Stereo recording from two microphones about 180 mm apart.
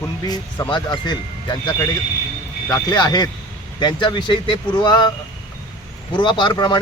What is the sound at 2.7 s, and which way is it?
Speech, 25° left (ahead or behind).